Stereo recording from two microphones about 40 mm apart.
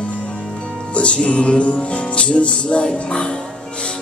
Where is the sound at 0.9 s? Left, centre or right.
Left.